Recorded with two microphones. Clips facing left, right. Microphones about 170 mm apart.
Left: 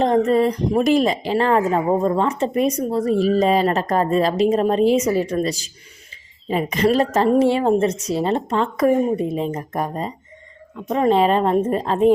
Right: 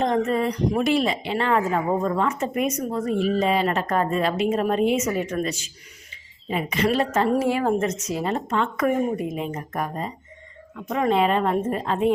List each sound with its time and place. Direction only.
0.0 s speech: 35° left (ahead or behind)